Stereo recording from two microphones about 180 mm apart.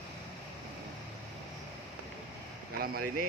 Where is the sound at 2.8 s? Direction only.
55° right (ahead or behind).